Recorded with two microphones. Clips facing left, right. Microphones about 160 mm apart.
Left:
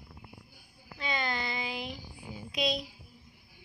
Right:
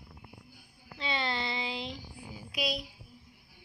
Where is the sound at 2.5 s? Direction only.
5° right (ahead or behind).